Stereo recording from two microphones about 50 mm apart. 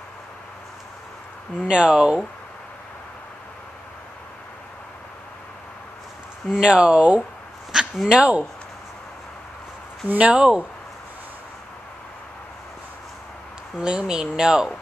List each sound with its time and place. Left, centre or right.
1.6 s speech: centre
6.5 s speech: centre
10.1 s speech: right
13.7 s speech: centre